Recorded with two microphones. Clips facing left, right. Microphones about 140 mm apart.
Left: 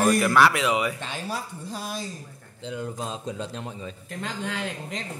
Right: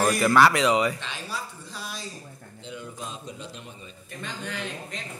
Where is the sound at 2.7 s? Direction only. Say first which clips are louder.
Left 6 dB; 90° left.